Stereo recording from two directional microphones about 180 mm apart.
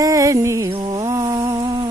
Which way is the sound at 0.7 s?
25° right (ahead or behind).